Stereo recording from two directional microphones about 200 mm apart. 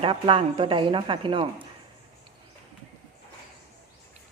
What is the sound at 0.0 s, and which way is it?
A woman's voice, 25° right (ahead or behind).